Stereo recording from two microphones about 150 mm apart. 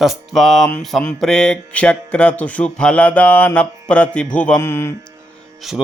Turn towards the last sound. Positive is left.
turn(degrees=0)  # may be behind; listen again after turning